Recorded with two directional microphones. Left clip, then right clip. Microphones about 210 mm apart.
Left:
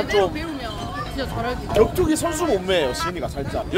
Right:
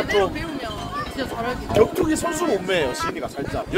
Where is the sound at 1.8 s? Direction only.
20° left (ahead or behind).